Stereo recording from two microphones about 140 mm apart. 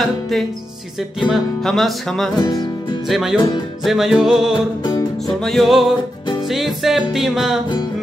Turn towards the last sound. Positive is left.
turn(degrees=0)  # may be behind; listen again after turning